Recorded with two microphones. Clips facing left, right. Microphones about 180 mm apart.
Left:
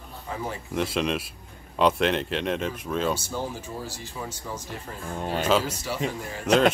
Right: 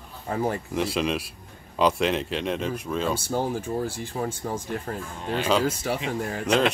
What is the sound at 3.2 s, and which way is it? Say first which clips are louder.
Speech: right 5 dB; 55° right (ahead or behind).